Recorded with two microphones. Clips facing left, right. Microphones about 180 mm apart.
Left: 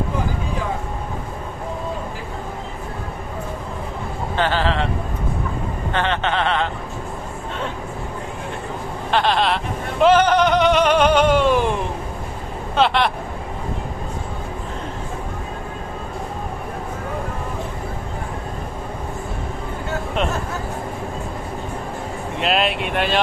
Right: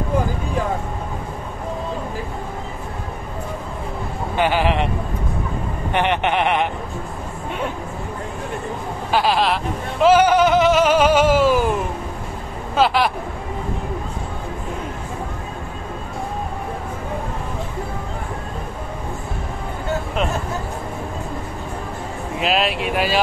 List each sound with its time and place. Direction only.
4.4 s speech: 15° right (ahead or behind)
5.9 s speech: 15° right (ahead or behind)
9.1 s speech: 5° right (ahead or behind)
12.7 s speech: 5° right (ahead or behind)
22.4 s speech: centre (ahead or behind)